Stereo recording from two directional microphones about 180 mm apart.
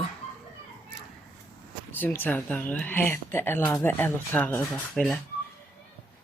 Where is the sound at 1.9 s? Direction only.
10° left (ahead or behind).